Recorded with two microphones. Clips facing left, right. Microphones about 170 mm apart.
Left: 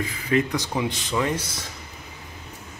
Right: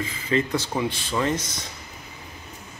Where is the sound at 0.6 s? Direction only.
15° left (ahead or behind).